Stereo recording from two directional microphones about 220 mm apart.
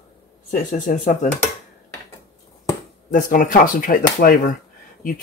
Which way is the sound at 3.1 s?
35° left (ahead or behind).